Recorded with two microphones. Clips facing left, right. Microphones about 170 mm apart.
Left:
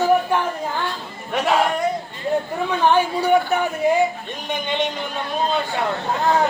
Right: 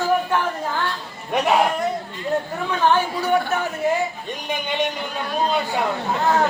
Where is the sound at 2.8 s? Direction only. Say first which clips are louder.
Left 2 dB; 15° left (ahead or behind).